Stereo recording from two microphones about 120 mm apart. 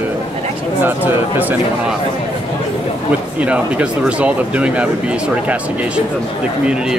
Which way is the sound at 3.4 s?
10° right (ahead or behind).